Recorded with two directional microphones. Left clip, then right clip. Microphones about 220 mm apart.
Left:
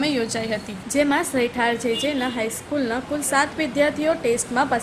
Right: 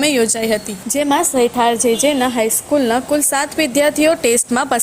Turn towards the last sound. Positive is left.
turn(degrees=-45)  # may be behind; listen again after turning